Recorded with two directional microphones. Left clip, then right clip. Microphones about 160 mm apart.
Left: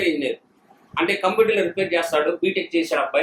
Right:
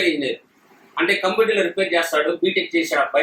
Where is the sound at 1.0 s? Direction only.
30° left (ahead or behind).